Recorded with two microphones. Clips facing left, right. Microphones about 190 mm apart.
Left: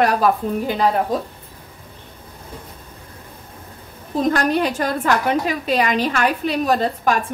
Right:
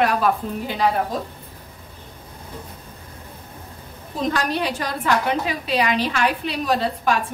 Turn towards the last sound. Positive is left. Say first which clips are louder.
# left 2 dB
turn(degrees=45)  # may be behind; listen again after turning